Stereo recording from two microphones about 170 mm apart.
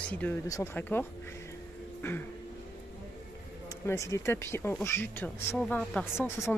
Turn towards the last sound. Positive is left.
turn(degrees=15)  # may be behind; listen again after turning